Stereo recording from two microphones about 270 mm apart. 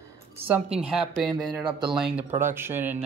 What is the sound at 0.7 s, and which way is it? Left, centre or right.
Speech, centre.